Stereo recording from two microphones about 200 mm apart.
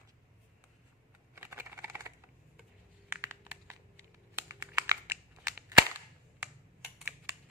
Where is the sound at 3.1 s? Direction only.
10° right (ahead or behind).